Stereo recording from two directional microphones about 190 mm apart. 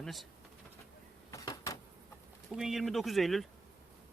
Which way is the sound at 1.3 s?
15° left (ahead or behind).